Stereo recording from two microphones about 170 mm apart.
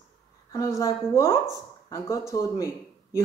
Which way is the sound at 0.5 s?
20° left (ahead or behind).